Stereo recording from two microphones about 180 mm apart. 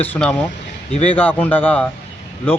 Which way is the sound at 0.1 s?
5° left (ahead or behind).